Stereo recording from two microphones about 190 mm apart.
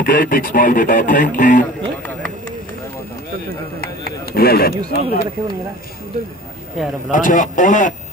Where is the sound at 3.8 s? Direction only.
55° left (ahead or behind).